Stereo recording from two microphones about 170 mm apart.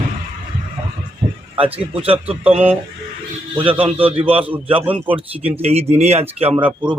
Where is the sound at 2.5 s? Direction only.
35° right (ahead or behind).